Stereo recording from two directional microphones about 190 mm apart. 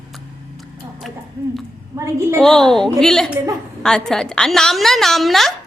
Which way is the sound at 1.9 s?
20° right (ahead or behind).